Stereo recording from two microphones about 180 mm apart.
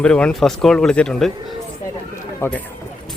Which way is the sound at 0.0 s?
5° left (ahead or behind).